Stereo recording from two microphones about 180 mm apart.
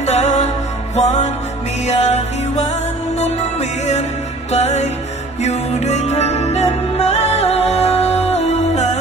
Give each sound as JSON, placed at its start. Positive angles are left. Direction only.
{"t": 0.0, "sound": "music", "side_deg": 40}